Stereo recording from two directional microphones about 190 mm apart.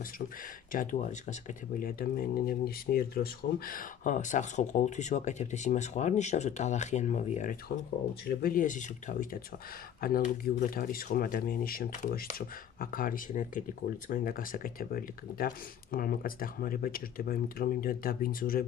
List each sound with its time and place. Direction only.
0.7 s speech: 45° left (ahead or behind)
8.3 s speech: 50° left (ahead or behind)